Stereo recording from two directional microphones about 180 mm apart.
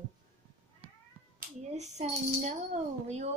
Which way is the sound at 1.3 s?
40° right (ahead or behind).